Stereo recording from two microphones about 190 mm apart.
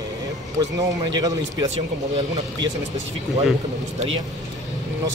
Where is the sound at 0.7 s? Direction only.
20° right (ahead or behind).